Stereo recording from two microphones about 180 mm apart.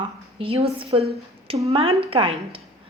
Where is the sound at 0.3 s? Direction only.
30° right (ahead or behind).